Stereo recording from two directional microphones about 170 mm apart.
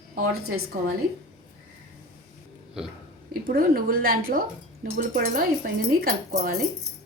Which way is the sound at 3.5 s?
60° right (ahead or behind).